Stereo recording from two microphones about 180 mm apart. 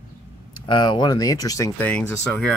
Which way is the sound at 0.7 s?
25° left (ahead or behind).